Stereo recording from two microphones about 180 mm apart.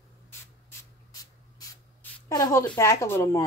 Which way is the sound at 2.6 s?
15° left (ahead or behind).